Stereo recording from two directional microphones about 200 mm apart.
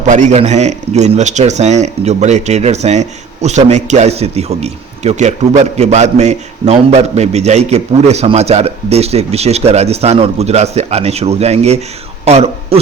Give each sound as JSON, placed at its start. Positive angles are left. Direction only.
{"t": 0.1, "sound": "a man's voice", "side_deg": -35}